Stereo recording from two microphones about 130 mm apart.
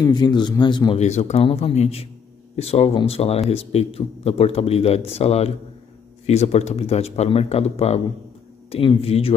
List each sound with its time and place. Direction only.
0.0 s a man's voice: 35° left (ahead or behind)
0.9 s speech: 60° left (ahead or behind)